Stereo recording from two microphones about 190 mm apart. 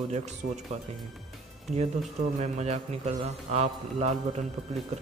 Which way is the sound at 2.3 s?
35° right (ahead or behind).